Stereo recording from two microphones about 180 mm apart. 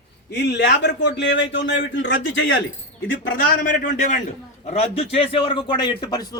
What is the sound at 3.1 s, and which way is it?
A man's voice, 50° left (ahead or behind).